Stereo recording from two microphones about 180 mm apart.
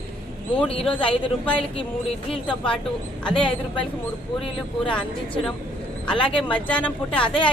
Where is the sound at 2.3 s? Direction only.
5° left (ahead or behind).